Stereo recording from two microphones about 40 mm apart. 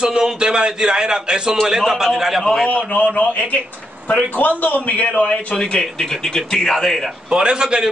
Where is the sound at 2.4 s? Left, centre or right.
Centre.